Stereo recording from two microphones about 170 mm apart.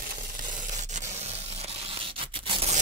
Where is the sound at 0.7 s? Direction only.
40° right (ahead or behind).